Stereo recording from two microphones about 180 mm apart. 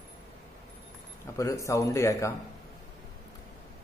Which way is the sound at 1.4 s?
15° left (ahead or behind).